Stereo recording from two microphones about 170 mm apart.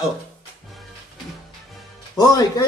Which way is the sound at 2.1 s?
20° left (ahead or behind).